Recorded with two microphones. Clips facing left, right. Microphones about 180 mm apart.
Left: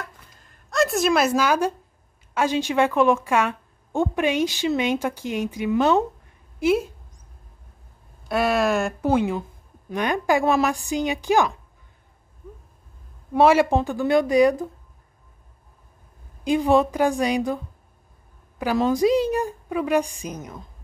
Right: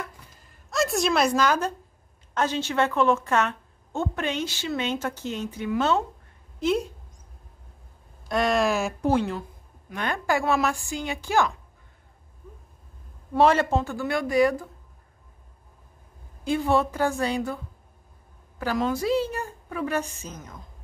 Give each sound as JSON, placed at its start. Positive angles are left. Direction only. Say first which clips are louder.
{"t": 0.7, "sound": "a woman's voice", "louder": "left 4 dB", "side_deg": 0}
{"t": 8.3, "sound": "a woman's voice", "louder": "left 2 dB", "side_deg": 5}
{"t": 13.3, "sound": "a woman's voice", "louder": "left 3 dB", "side_deg": 10}
{"t": 16.4, "sound": "a woman's voice", "louder": "left 4 dB", "side_deg": 15}
{"t": 18.9, "sound": "a woman's voice", "louder": "left 7 dB", "side_deg": 15}